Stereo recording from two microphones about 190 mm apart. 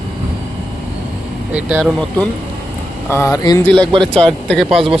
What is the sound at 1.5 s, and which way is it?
Speech, 5° right (ahead or behind).